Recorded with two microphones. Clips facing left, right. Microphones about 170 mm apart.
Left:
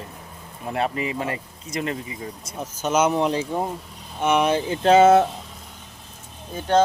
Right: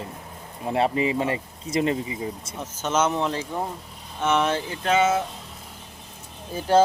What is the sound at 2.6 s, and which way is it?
Speech, 10° left (ahead or behind).